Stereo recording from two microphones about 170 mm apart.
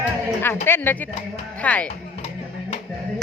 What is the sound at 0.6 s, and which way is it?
Speech, 10° left (ahead or behind).